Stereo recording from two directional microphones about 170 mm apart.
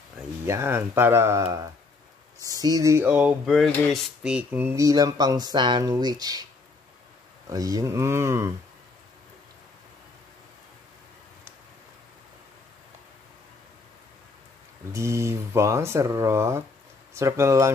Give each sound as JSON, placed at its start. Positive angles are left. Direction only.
{"t": 0.5, "sound": "speech", "side_deg": -15}
{"t": 2.6, "sound": "a sound", "side_deg": -20}
{"t": 7.4, "sound": "speech", "side_deg": -20}
{"t": 14.9, "sound": "speech", "side_deg": -15}